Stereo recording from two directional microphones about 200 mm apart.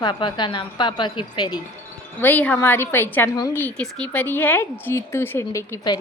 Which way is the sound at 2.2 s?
10° left (ahead or behind).